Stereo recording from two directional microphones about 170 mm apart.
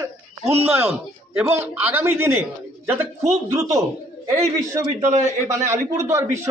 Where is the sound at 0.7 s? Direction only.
10° right (ahead or behind).